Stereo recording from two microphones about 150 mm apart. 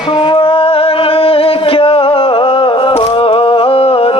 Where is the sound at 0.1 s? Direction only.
35° left (ahead or behind).